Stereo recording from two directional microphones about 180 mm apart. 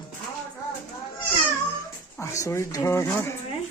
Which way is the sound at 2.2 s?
15° left (ahead or behind).